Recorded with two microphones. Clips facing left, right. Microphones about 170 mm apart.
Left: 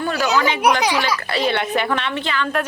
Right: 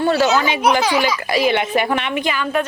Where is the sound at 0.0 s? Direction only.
30° right (ahead or behind).